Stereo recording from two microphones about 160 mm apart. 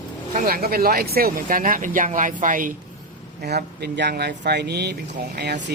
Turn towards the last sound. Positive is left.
turn(degrees=-90)